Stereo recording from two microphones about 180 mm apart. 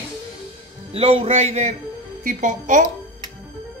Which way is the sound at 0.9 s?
35° right (ahead or behind).